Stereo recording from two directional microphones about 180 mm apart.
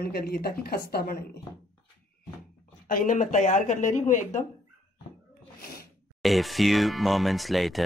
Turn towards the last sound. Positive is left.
turn(degrees=0)  # may be behind; listen again after turning